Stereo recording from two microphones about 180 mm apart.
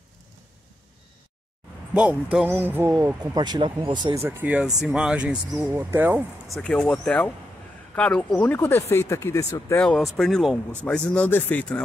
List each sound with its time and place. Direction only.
2.3 s speech: 5° right (ahead or behind)
6.5 s speech: 5° left (ahead or behind)
10.1 s speech: centre (ahead or behind)